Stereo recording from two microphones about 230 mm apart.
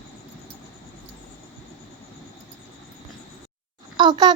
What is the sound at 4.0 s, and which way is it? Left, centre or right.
Speech, centre.